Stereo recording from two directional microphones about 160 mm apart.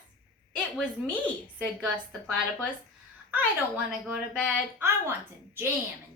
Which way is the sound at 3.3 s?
10° right (ahead or behind).